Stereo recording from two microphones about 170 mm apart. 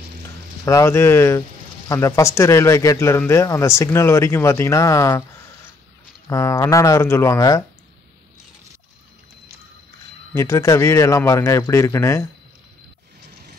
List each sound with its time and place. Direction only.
0.7 s speech: 15° left (ahead or behind)
10.3 s speech: 15° left (ahead or behind)